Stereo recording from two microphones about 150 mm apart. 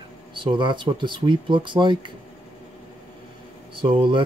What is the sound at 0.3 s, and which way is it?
Speech, 35° right (ahead or behind).